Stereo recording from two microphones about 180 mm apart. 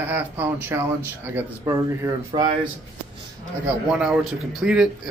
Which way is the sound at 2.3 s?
25° right (ahead or behind).